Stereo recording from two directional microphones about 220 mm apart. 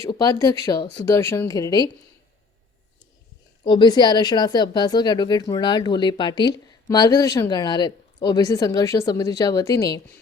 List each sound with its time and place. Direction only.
0.1 s speech: 15° left (ahead or behind)
3.6 s speech: 20° left (ahead or behind)